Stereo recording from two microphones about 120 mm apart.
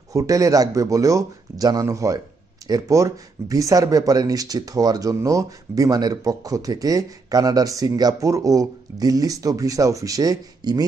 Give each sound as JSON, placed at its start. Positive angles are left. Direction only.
{"t": 0.1, "sound": "speech", "side_deg": -30}